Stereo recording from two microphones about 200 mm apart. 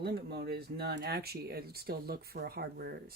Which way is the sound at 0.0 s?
55° right (ahead or behind).